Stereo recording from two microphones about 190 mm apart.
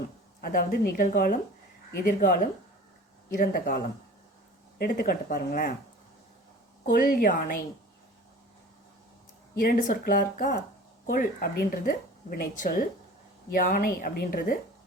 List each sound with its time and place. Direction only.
0.4 s a woman's voice: 50° left (ahead or behind)
6.8 s a woman's voice: 50° left (ahead or behind)
9.6 s a woman's voice: 50° left (ahead or behind)